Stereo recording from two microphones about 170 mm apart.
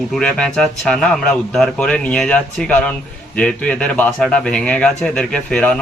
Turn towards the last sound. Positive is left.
turn(degrees=5)  # may be behind; listen again after turning